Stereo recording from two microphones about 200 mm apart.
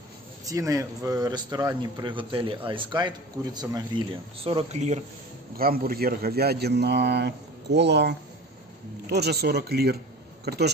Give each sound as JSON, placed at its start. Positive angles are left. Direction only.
{"t": 0.5, "sound": "a man's voice", "side_deg": -15}
{"t": 5.6, "sound": "a man's voice", "side_deg": -45}